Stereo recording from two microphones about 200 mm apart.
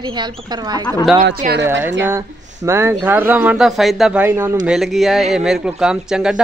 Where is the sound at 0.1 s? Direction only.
20° right (ahead or behind).